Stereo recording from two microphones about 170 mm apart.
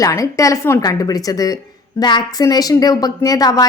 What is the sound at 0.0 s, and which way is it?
A woman's voice, 20° left (ahead or behind).